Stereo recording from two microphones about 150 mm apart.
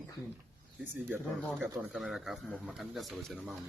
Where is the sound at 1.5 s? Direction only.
5° right (ahead or behind).